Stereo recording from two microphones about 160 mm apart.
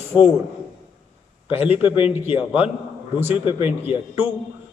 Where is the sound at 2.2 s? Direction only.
10° right (ahead or behind).